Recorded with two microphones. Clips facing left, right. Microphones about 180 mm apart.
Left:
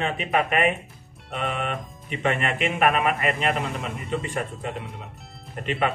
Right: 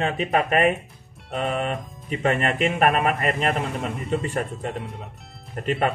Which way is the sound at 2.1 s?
40° right (ahead or behind).